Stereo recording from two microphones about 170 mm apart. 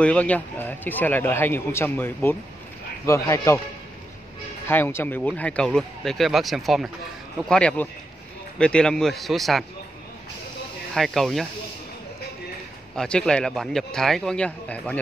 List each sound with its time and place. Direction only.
0.0 s a man's voice: 10° left (ahead or behind)
4.6 s a man's voice: 10° left (ahead or behind)
11.0 s speech: centre (ahead or behind)
12.9 s speech: 5° left (ahead or behind)